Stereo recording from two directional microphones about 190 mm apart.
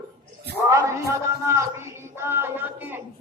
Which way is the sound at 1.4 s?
15° right (ahead or behind).